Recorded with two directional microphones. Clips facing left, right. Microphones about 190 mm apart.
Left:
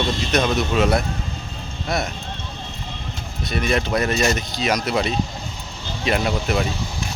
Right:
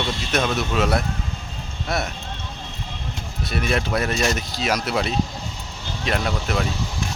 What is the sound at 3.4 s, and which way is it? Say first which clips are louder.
Speech: left 2 dB; 5° right (ahead or behind).